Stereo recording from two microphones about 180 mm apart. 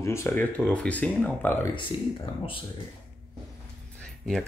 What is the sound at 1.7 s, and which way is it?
Speech, 25° left (ahead or behind).